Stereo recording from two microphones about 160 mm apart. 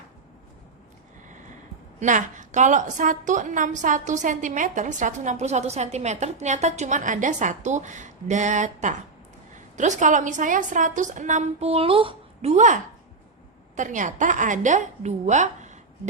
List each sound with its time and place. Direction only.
2.0 s a woman's voice: 50° right (ahead or behind)